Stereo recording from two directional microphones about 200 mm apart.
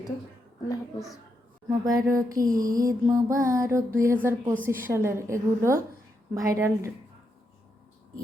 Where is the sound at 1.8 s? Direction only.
15° right (ahead or behind).